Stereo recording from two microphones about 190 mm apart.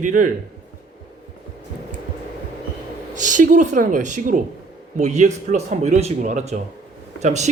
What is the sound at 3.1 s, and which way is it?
Speech, 40° right (ahead or behind).